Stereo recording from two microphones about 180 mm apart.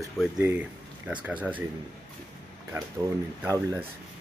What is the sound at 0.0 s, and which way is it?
Speech, 5° right (ahead or behind).